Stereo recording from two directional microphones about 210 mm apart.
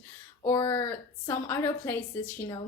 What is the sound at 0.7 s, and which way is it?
A woman's voice, 10° left (ahead or behind).